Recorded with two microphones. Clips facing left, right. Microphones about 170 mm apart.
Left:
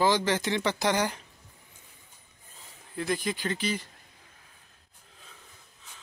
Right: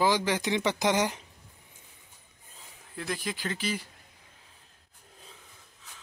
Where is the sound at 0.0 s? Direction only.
10° right (ahead or behind).